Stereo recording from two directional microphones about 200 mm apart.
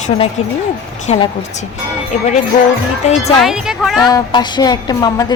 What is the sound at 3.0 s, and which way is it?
Speech, 35° left (ahead or behind).